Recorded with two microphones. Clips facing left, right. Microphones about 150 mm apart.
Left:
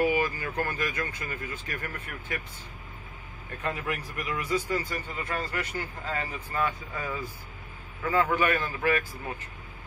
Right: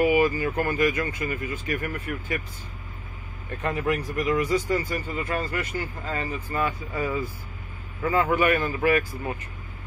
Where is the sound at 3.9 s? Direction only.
35° right (ahead or behind).